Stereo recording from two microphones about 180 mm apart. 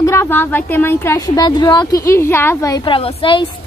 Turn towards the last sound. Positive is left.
turn(degrees=30)  # may be behind; listen again after turning